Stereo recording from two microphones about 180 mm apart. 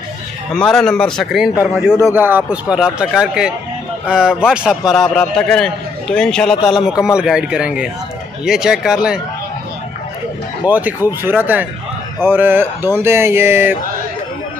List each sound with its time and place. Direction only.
0.6 s a man's voice: 5° left (ahead or behind)
2.1 s a man's voice: 10° right (ahead or behind); by 6.5 s 5° left (ahead or behind)
6.5 s speech: 25° left (ahead or behind)
6.8 s a man's voice: 5° right (ahead or behind)
10.7 s speech: 10° right (ahead or behind)